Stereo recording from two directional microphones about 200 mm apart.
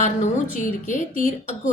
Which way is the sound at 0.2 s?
40° left (ahead or behind).